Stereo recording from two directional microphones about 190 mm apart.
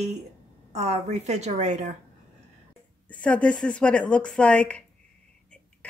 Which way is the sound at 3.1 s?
5° left (ahead or behind).